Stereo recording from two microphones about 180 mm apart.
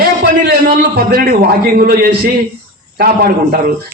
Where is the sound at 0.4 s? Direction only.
55° right (ahead or behind).